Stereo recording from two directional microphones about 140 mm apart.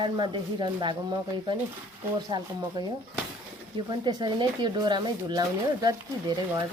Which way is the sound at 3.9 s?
30° right (ahead or behind).